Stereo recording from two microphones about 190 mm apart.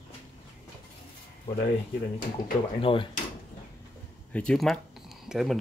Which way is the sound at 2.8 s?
30° left (ahead or behind).